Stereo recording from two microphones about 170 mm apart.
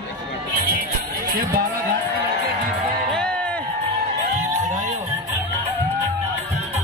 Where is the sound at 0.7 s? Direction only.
60° right (ahead or behind).